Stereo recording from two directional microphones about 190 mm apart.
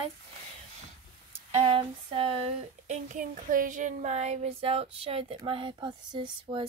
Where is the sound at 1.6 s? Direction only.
25° right (ahead or behind).